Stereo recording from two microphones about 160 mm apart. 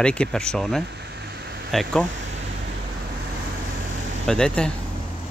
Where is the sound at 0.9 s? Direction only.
90° right.